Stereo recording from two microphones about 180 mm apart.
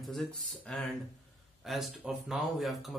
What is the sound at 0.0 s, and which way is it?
A man's voice, centre (ahead or behind).